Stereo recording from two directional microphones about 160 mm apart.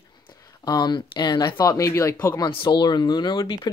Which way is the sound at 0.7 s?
25° left (ahead or behind).